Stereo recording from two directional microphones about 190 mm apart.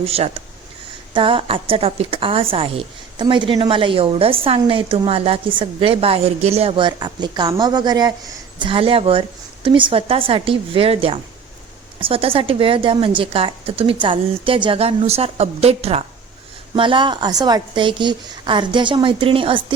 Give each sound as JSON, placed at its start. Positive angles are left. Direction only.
{"t": 0.0, "sound": "a woman's voice", "side_deg": -30}